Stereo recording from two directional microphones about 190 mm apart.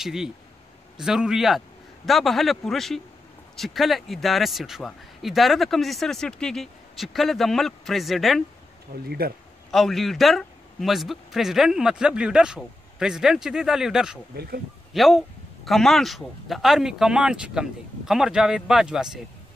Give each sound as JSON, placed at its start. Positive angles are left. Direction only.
{"t": 0.0, "sound": "speech", "side_deg": 0}
{"t": 8.9, "sound": "speech", "side_deg": -50}
{"t": 9.7, "sound": "speech", "side_deg": 0}